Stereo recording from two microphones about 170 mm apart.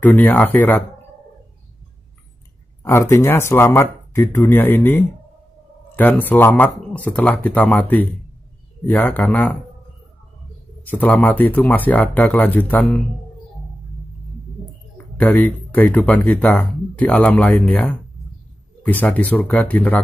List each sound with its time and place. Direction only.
0.0 s speech: 10° left (ahead or behind)
2.8 s speech: 15° left (ahead or behind)
10.9 s speech: 10° left (ahead or behind)
15.1 s speech: 10° left (ahead or behind)